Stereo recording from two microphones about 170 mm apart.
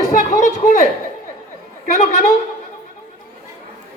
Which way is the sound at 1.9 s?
40° left (ahead or behind).